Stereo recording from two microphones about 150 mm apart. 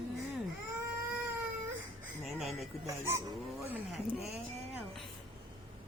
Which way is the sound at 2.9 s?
20° right (ahead or behind).